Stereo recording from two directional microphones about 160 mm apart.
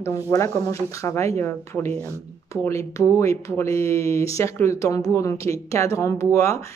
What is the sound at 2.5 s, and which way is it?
Speech, 20° left (ahead or behind).